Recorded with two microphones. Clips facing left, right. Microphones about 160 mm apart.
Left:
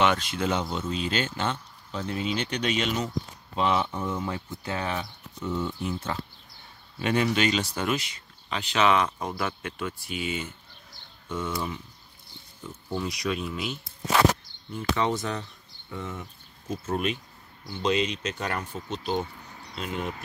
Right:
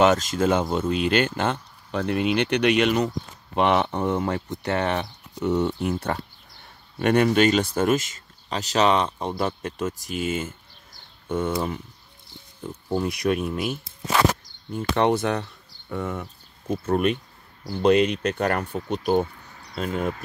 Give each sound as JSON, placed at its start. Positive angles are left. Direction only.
{"t": 0.0, "sound": "speech", "side_deg": -40}
{"t": 15.0, "sound": "speech", "side_deg": -65}